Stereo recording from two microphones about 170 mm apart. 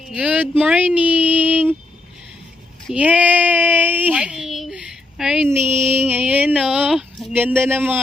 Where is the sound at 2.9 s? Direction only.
10° right (ahead or behind).